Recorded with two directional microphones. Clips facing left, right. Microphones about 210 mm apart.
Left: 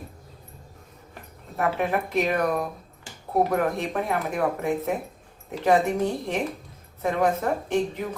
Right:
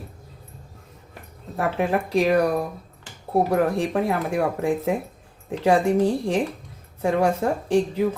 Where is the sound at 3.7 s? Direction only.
30° right (ahead or behind).